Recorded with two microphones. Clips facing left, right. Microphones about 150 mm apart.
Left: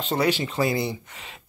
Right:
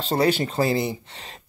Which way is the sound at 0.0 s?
35° right (ahead or behind).